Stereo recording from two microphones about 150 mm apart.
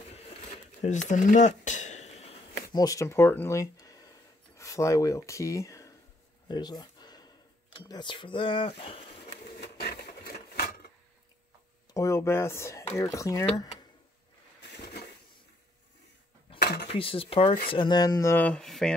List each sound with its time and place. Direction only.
0.8 s speech: 55° left (ahead or behind)
2.7 s speech: 25° left (ahead or behind)
6.5 s a sound: 30° left (ahead or behind)
9.6 s printer: 90° left
10.2 s a sound: 90° left
11.9 s speech: 20° left (ahead or behind)
16.6 s dishes: 90° left
16.9 s speech: 40° left (ahead or behind); by 18.9 s 5° left (ahead or behind)